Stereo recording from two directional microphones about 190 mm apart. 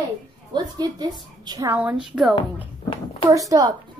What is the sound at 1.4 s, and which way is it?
Speech, 15° right (ahead or behind).